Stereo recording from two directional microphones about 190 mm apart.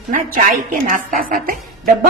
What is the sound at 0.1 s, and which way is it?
A woman's voice, 45° right (ahead or behind).